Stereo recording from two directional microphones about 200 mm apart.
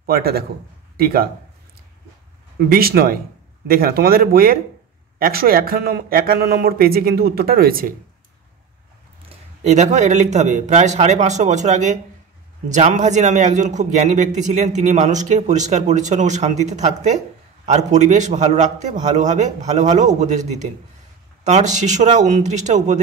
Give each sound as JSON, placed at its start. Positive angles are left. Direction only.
{"t": 0.0, "sound": "a man's voice", "side_deg": -50}
{"t": 2.7, "sound": "a man's voice", "side_deg": -50}
{"t": 9.6, "sound": "a man's voice", "side_deg": -35}
{"t": 21.5, "sound": "a man's voice", "side_deg": -35}